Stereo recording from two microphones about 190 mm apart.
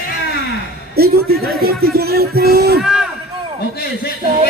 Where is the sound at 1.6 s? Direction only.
55° right (ahead or behind).